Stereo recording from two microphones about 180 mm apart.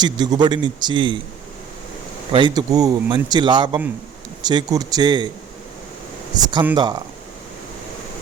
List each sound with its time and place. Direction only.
0.0 s speech: 25° right (ahead or behind)
2.3 s speech: 25° right (ahead or behind)
6.3 s speech: 20° right (ahead or behind)